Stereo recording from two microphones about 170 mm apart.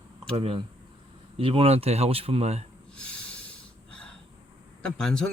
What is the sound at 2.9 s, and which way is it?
Snort, 5° left (ahead or behind).